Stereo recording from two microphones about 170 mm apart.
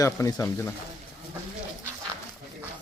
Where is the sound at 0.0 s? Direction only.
20° left (ahead or behind).